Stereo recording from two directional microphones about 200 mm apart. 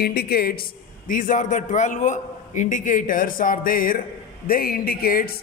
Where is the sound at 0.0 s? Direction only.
50° left (ahead or behind).